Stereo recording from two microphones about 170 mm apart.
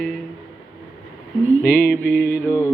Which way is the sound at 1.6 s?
60° left (ahead or behind).